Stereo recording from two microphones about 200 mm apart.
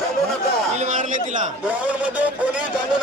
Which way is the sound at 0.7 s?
35° right (ahead or behind).